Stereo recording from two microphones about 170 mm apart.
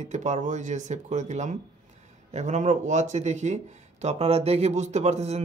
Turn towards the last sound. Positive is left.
turn(degrees=-40)  # may be behind; listen again after turning